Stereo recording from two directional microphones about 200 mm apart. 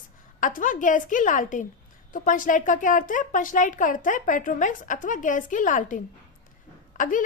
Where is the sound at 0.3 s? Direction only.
40° left (ahead or behind).